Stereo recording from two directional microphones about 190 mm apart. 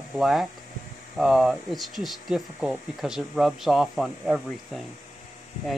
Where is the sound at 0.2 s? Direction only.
Centre (ahead or behind).